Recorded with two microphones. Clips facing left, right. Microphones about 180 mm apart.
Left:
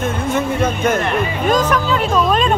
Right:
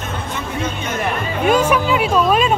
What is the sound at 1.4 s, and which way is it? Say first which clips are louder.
Speech: right 3 dB; 10° right (ahead or behind).